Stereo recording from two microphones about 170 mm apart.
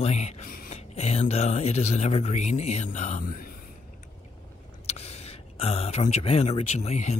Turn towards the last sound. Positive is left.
turn(degrees=40)  # may be behind; listen again after turning